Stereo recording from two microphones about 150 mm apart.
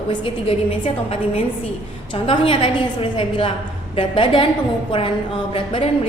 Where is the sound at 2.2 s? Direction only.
35° left (ahead or behind).